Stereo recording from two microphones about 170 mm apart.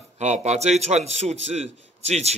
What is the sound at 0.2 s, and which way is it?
A man's voice, 40° right (ahead or behind).